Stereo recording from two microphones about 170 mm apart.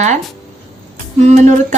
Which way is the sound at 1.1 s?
45° right (ahead or behind).